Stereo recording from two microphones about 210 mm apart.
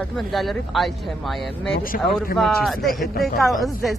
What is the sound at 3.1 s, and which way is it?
Speech, 45° left (ahead or behind).